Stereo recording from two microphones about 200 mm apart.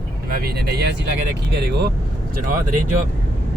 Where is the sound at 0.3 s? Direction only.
50° right (ahead or behind).